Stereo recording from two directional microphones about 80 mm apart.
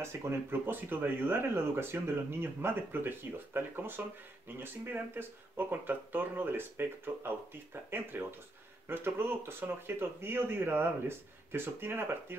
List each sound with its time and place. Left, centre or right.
0.0 s speech: right